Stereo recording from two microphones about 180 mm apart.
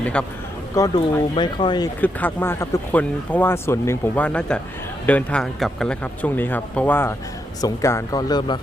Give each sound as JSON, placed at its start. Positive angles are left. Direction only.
{"t": 0.0, "sound": "speech", "side_deg": 5}
{"t": 0.8, "sound": "speech", "side_deg": 25}
{"t": 2.0, "sound": "speech", "side_deg": 10}